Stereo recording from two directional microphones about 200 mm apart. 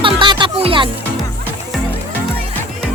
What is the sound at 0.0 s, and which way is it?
Music, 25° right (ahead or behind).